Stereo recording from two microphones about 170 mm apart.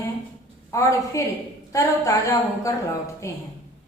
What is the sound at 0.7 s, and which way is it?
A woman's voice, 20° left (ahead or behind).